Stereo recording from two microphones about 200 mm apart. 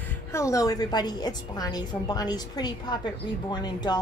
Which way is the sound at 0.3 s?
15° left (ahead or behind).